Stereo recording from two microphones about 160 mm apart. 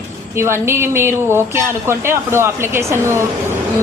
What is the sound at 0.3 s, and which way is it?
A woman's voice, 15° right (ahead or behind).